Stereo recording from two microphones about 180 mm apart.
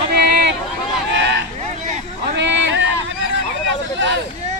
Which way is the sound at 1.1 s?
75° right (ahead or behind).